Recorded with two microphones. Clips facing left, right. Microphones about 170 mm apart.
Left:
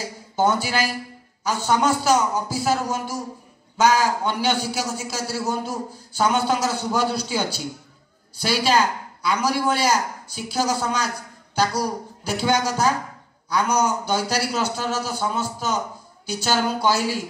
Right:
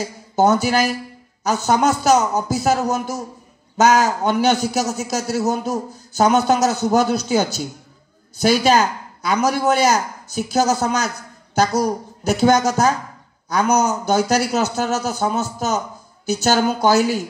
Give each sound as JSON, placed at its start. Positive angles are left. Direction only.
{"t": 0.4, "sound": "a man's voice", "side_deg": -45}